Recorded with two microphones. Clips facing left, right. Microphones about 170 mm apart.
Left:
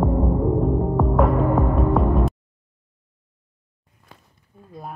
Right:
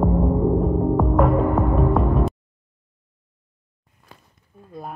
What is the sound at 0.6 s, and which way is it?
Music, centre (ahead or behind).